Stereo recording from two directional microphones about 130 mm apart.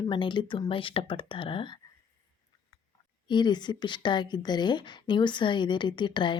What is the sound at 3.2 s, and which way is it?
Speech, 35° left (ahead or behind).